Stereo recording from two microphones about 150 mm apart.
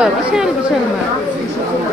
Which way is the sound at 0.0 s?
5° right (ahead or behind).